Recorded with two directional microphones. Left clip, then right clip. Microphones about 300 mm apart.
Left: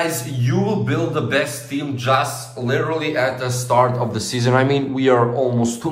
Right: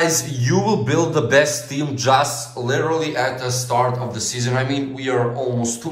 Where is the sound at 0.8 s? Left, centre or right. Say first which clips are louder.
Right 3 dB; centre.